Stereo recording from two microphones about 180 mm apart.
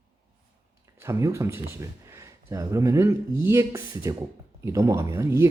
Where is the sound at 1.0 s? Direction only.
15° right (ahead or behind).